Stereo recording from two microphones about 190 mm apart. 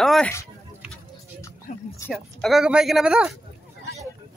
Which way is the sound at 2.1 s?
Centre (ahead or behind).